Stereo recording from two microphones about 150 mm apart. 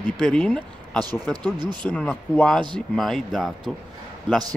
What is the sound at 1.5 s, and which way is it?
Speech, 30° right (ahead or behind).